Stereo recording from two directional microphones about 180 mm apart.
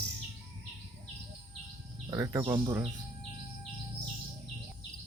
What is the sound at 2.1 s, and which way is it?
Speech, 20° right (ahead or behind).